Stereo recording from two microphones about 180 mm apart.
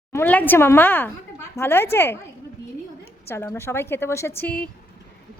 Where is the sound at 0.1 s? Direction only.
10° left (ahead or behind).